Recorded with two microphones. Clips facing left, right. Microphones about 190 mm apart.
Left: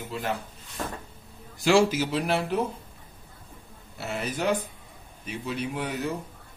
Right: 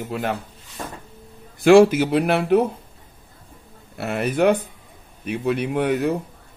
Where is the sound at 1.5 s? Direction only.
55° right (ahead or behind).